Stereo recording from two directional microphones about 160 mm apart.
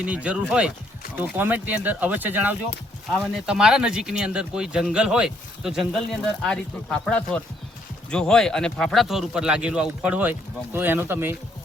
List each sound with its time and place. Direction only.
0.0 s speech: 10° right (ahead or behind)